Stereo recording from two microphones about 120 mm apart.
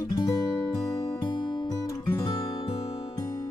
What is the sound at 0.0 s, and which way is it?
Guitar, 30° left (ahead or behind).